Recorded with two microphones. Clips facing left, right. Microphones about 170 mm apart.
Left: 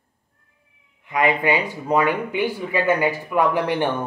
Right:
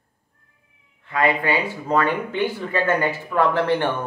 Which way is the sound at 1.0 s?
15° left (ahead or behind).